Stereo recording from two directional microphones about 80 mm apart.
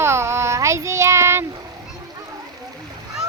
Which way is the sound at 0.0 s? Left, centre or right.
Right.